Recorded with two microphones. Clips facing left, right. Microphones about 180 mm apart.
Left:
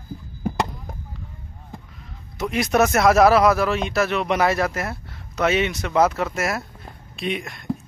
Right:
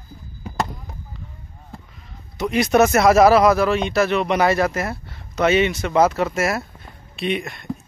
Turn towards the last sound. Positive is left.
turn(degrees=0)  # may be behind; listen again after turning